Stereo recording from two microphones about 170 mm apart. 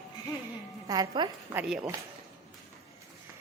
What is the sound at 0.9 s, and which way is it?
Speech, 20° right (ahead or behind).